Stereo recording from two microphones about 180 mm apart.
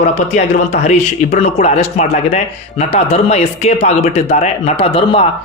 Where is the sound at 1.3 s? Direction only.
35° left (ahead or behind).